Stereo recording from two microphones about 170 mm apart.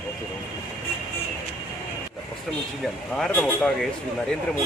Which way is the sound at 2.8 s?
5° left (ahead or behind).